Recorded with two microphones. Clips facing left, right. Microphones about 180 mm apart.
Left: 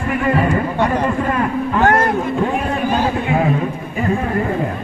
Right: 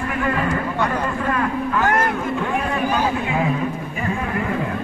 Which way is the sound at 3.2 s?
40° left (ahead or behind).